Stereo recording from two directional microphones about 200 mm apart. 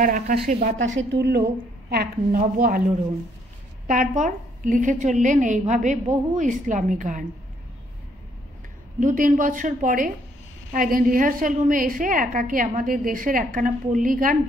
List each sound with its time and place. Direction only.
0.0 s a woman's voice: 45° right (ahead or behind)
0.7 s a woman's voice: 70° right (ahead or behind); by 2.8 s 45° right (ahead or behind)
3.8 s a woman's voice: 40° right (ahead or behind)
9.0 s a woman's voice: 40° right (ahead or behind)